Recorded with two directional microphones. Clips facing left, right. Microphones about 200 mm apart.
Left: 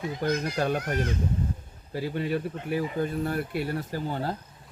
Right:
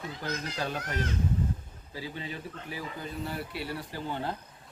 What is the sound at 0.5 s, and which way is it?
Speech, 50° left (ahead or behind).